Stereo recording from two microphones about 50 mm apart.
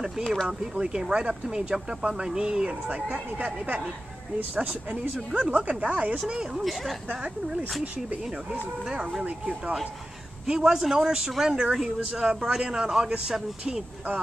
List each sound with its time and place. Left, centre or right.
0.5 s speech: centre; by 6.1 s right
6.2 s speech: centre
10.4 s speech: centre